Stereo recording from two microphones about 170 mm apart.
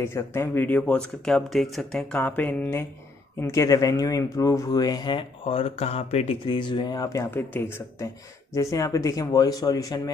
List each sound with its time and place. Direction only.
0.0 s speech: 15° left (ahead or behind)